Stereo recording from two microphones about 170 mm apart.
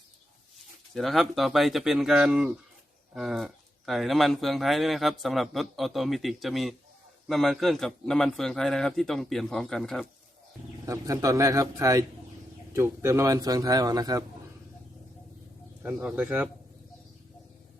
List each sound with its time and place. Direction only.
0.9 s speech: centre (ahead or behind)
10.8 s a man's voice: 20° right (ahead or behind)
15.8 s speech: 10° right (ahead or behind)